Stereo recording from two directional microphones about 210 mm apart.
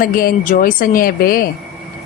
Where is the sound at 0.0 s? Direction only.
45° left (ahead or behind).